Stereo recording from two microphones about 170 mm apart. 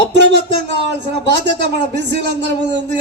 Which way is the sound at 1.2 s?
90° right.